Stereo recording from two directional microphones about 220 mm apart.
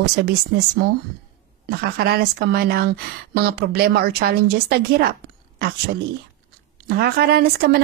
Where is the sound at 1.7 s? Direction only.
45° right (ahead or behind).